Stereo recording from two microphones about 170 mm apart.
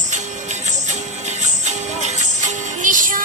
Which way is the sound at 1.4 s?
45° right (ahead or behind).